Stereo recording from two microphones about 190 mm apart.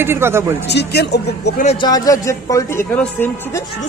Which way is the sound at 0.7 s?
60° left (ahead or behind).